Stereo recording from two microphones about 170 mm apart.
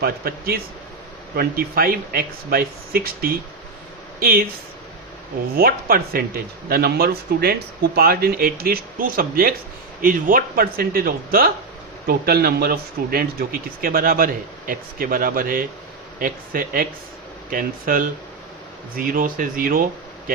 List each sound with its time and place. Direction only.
0.0 s speech: 60° right (ahead or behind)
5.5 s speech: 60° right (ahead or behind)